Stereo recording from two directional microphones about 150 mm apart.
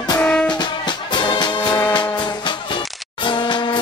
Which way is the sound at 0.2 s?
10° left (ahead or behind).